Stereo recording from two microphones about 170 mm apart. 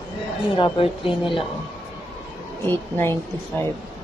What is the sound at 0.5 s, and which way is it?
Speech, 30° left (ahead or behind).